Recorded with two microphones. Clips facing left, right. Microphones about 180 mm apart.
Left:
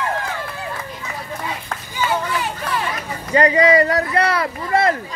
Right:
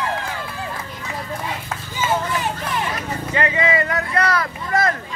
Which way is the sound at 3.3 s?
35° left (ahead or behind).